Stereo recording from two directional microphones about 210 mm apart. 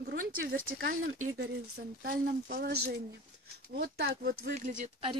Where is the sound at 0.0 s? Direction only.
60° right (ahead or behind).